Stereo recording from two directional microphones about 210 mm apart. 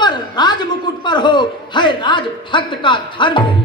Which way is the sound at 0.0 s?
20° left (ahead or behind).